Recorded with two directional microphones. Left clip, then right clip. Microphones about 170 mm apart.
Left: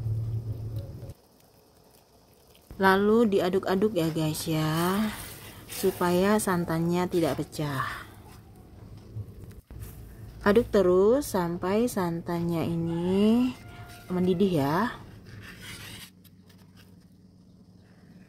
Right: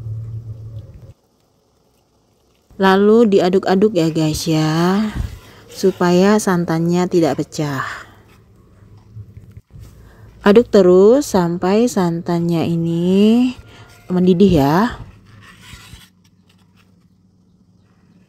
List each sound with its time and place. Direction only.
2.8 s a woman's voice: 40° right (ahead or behind)
10.4 s a woman's voice: 40° right (ahead or behind)